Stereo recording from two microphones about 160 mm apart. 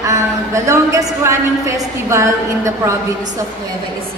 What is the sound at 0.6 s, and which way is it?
A woman's voice, 20° right (ahead or behind).